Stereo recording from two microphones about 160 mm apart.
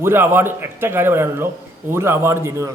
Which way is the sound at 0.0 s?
15° right (ahead or behind).